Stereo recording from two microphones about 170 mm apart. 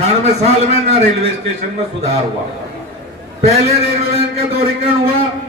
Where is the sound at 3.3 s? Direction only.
40° right (ahead or behind).